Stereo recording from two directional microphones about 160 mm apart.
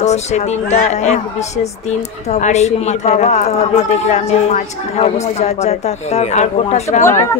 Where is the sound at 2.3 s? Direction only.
45° left (ahead or behind).